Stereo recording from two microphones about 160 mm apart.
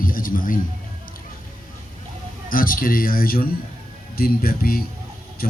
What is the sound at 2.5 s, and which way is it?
A man's voice, 60° left (ahead or behind).